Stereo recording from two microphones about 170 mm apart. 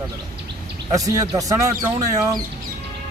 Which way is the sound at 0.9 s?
20° right (ahead or behind).